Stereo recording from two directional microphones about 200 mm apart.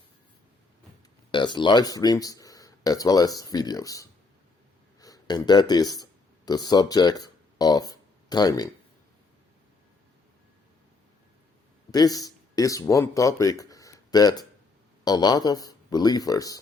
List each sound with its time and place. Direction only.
1.3 s speech: 25° left (ahead or behind)
11.9 s speech: 20° left (ahead or behind)